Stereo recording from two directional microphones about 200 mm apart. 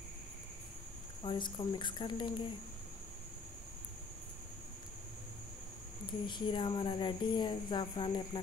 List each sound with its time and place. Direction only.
1.2 s speech: 20° left (ahead or behind)
6.2 s speech: 25° left (ahead or behind)